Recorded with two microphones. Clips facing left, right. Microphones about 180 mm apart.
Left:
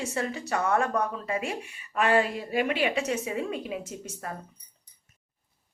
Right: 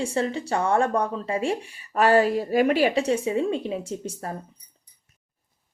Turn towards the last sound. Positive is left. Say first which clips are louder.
# right 6 dB
turn(degrees=-30)  # may be behind; listen again after turning